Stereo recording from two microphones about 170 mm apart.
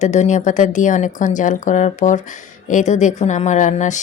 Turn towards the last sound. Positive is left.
turn(degrees=45)  # may be behind; listen again after turning